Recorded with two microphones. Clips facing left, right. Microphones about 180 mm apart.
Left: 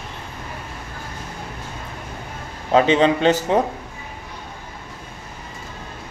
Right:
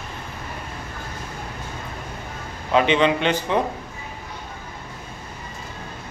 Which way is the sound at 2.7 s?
40° left (ahead or behind).